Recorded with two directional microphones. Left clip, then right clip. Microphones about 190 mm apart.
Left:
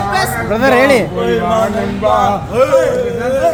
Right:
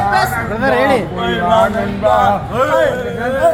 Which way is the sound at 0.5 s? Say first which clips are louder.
Left 5 dB; 85° left.